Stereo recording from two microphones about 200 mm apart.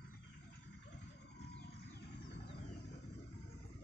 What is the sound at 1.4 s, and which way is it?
Music, 55° left (ahead or behind).